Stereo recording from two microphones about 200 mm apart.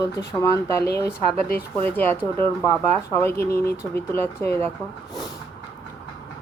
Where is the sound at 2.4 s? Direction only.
10° left (ahead or behind).